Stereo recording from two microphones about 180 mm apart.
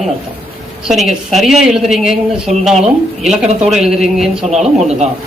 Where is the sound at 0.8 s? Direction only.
Centre (ahead or behind).